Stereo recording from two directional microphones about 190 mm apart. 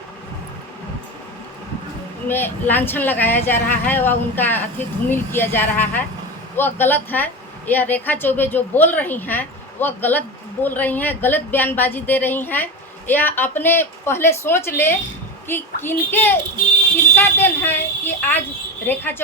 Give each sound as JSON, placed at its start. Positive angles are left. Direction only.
{"t": 2.2, "sound": "a woman's voice", "side_deg": 10}